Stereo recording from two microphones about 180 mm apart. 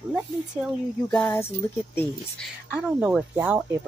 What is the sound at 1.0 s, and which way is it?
Speech, 10° left (ahead or behind).